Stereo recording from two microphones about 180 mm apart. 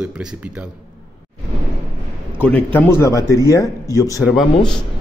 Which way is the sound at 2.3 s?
10° left (ahead or behind).